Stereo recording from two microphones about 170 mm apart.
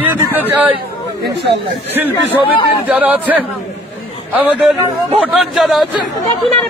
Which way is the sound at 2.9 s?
10° right (ahead or behind).